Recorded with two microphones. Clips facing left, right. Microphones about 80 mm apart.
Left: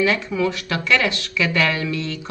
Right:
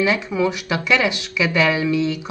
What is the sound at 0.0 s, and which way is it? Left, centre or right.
Speech, centre.